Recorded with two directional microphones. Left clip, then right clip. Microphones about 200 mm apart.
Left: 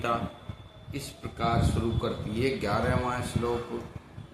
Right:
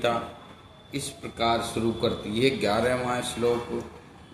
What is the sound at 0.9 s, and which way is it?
Mantra, 15° right (ahead or behind).